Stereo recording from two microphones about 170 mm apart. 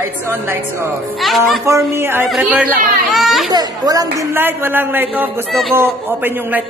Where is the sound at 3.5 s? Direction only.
20° right (ahead or behind).